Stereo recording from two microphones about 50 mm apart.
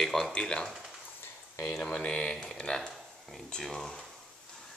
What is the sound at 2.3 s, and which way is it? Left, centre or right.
Speech, centre.